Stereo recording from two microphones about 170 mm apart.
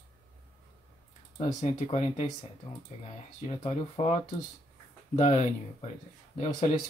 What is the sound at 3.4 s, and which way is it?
Speech, 35° left (ahead or behind).